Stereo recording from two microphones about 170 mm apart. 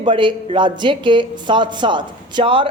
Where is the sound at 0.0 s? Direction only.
30° right (ahead or behind).